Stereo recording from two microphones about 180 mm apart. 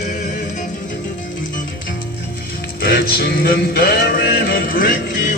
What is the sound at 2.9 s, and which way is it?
Music, 55° left (ahead or behind).